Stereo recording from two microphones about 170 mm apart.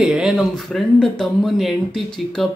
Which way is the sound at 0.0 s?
5° right (ahead or behind).